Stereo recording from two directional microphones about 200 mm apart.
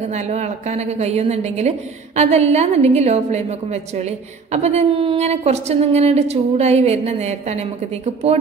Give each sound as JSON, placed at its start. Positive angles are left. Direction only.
{"t": 0.0, "sound": "a woman's voice", "side_deg": -35}